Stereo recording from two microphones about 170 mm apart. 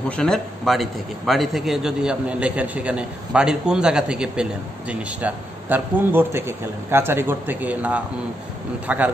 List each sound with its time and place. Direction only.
0.1 s a man's voice: 5° left (ahead or behind)